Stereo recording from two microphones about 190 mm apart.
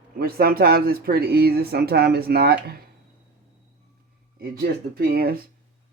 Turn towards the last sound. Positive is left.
turn(degrees=-50)  # may be behind; listen again after turning